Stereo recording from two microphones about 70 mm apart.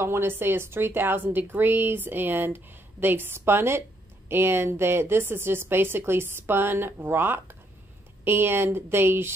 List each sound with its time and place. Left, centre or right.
0.0 s speech: right